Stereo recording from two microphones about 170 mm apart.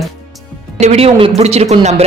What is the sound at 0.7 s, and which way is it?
A woman's voice, 40° right (ahead or behind).